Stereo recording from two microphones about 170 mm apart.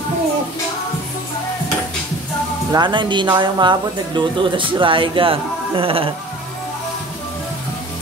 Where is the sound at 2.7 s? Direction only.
25° right (ahead or behind).